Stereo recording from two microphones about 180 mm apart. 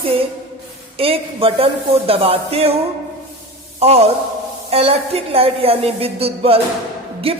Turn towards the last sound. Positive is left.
turn(degrees=-30)  # may be behind; listen again after turning